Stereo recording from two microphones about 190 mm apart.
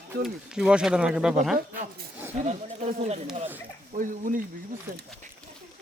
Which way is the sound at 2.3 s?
35° right (ahead or behind).